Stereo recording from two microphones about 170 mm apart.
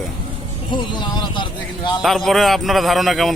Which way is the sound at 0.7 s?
30° left (ahead or behind).